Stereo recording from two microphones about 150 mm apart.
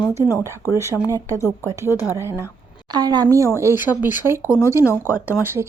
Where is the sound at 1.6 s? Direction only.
15° right (ahead or behind).